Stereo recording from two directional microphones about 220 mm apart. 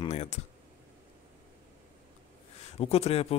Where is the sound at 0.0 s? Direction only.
30° left (ahead or behind).